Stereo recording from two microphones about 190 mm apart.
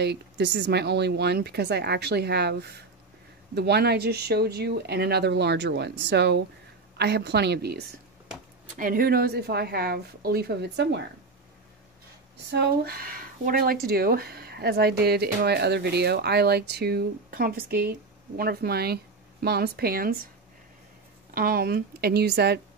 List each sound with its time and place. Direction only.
0.0 s speech: 60° right (ahead or behind)
8.7 s speech: 50° right (ahead or behind); by 11.1 s 65° right (ahead or behind)
12.4 s speech: 60° right (ahead or behind)
21.4 s speech: 50° right (ahead or behind)